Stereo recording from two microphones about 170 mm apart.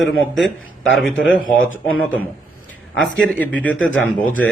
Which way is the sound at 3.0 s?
5° left (ahead or behind).